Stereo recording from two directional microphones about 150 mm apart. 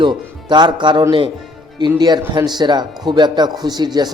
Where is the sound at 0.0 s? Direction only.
30° right (ahead or behind).